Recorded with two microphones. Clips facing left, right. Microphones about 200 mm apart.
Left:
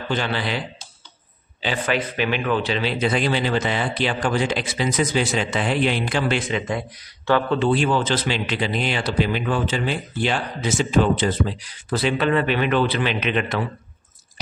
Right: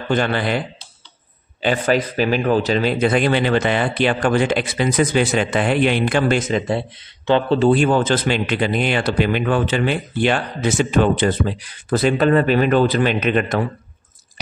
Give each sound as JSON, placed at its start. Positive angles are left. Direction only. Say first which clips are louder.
{"t": 0.1, "sound": "a man's voice", "louder": "right 6 dB", "side_deg": -50}
{"t": 7.5, "sound": "speech", "louder": "right 5 dB", "side_deg": -45}